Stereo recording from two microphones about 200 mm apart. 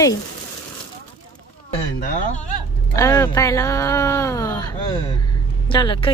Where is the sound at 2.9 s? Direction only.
15° left (ahead or behind).